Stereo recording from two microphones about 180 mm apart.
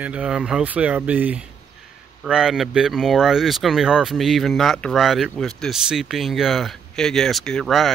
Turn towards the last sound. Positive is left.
turn(degrees=0)  # may be behind; listen again after turning